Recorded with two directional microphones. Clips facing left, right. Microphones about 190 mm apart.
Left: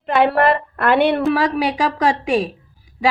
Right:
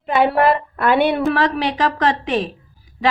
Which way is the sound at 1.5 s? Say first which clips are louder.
Left 1 dB; 10° left (ahead or behind).